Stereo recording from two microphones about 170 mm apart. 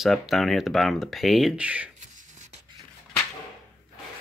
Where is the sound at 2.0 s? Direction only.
45° right (ahead or behind).